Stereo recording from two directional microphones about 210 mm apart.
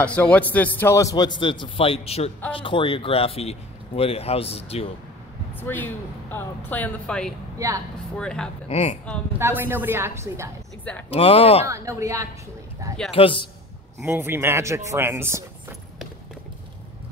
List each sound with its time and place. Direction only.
0.0 s a man's voice: 5° left (ahead or behind); by 4.9 s 30° left (ahead or behind)
5.6 s speech: 10° left (ahead or behind)
7.5 s a woman's voice: 15° right (ahead or behind)
8.2 s speech: 5° left (ahead or behind)
8.6 s speech: 30° left (ahead or behind)
9.4 s speech: 10° right (ahead or behind)
11.1 s speech: 25° left (ahead or behind)
11.6 s speech: 15° right (ahead or behind)
13.1 s speech: 25° left (ahead or behind)
13.9 s speech: 10° right (ahead or behind)